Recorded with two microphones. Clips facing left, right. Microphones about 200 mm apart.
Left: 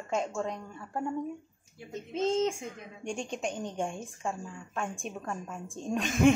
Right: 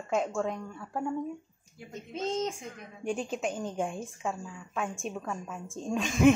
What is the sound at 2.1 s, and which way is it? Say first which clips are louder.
Speech: left 4 dB; 25° left (ahead or behind).